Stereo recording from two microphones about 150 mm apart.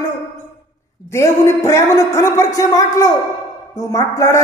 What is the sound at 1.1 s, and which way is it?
A man's voice, 20° left (ahead or behind).